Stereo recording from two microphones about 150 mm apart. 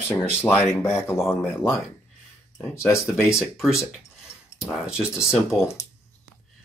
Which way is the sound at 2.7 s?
20° left (ahead or behind).